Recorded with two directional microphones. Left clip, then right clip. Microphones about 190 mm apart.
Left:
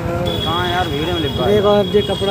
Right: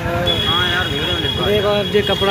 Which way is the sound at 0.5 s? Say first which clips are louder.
Right 1 dB; 60° left (ahead or behind).